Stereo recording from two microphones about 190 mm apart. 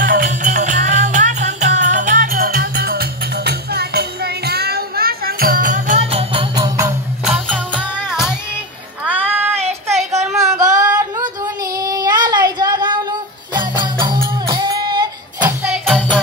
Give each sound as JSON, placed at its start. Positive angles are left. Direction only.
{"t": 0.0, "sound": "music", "side_deg": -45}
{"t": 7.2, "sound": "music", "side_deg": 0}
{"t": 9.0, "sound": "child singing", "side_deg": -10}
{"t": 9.9, "sound": "a sound", "side_deg": -35}
{"t": 10.8, "sound": "female singing", "side_deg": -15}
{"t": 11.7, "sound": "child singing", "side_deg": -20}
{"t": 13.5, "sound": "music", "side_deg": -25}
{"t": 15.6, "sound": "music", "side_deg": -5}